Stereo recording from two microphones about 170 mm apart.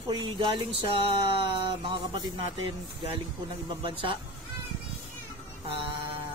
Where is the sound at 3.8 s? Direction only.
30° right (ahead or behind).